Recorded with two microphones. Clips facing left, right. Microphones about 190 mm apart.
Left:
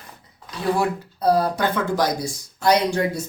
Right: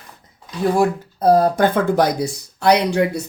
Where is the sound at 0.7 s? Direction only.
45° right (ahead or behind); by 3.2 s 65° right (ahead or behind).